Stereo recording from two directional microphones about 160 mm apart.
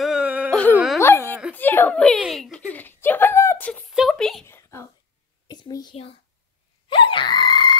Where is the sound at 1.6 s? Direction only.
10° left (ahead or behind).